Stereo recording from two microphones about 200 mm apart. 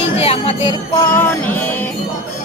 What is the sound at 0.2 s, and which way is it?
Jingle bell, 30° left (ahead or behind).